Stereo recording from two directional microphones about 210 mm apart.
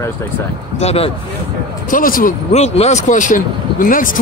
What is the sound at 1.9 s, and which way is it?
Speech, 40° left (ahead or behind).